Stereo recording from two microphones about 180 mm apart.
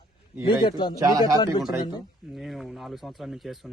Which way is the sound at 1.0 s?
20° right (ahead or behind).